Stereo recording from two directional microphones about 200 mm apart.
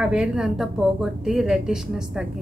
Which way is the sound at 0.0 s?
5° right (ahead or behind).